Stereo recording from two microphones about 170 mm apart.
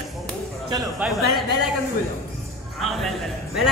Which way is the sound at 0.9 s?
5° right (ahead or behind).